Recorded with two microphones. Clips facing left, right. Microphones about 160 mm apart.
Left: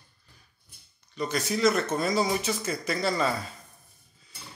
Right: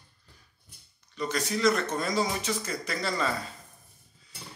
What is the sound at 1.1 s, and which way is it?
Speech, 10° left (ahead or behind).